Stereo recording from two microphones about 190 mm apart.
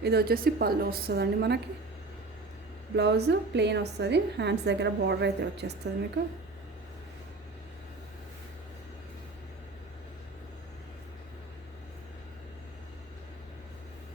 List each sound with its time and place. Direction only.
0.0 s a woman's voice: 55° right (ahead or behind)
2.9 s a woman's voice: 60° right (ahead or behind)